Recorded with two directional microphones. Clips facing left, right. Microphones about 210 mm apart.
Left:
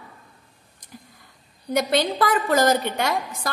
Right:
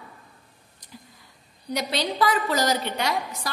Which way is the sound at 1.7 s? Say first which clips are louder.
Left 6 dB; 50° left (ahead or behind).